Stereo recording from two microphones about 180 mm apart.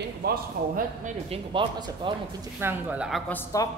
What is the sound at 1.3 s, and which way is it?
Speech, 30° right (ahead or behind).